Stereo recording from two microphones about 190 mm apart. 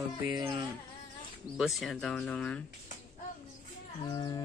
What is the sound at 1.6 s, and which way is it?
Speech, centre (ahead or behind).